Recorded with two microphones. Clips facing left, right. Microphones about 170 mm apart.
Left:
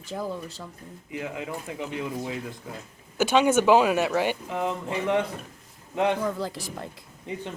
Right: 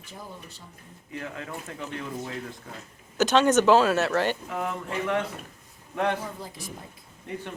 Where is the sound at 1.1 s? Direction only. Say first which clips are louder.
Left 3 dB; 15° left (ahead or behind).